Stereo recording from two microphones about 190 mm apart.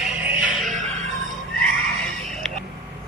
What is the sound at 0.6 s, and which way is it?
Music, 40° right (ahead or behind).